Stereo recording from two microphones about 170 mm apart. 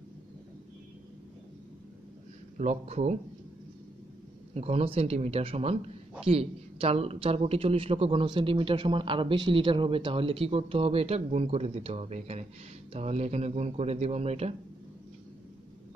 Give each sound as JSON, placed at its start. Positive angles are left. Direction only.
{"t": 2.5, "sound": "a woman's voice", "side_deg": -45}
{"t": 4.6, "sound": "a woman's voice", "side_deg": -35}